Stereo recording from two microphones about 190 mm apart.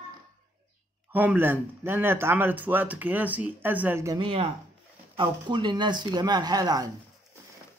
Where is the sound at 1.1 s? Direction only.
10° right (ahead or behind).